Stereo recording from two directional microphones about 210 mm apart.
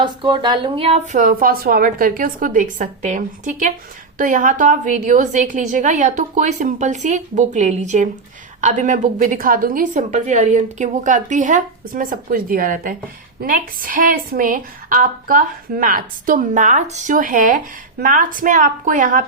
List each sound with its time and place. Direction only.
0.0 s a woman's voice: 20° right (ahead or behind); by 19.2 s 40° right (ahead or behind)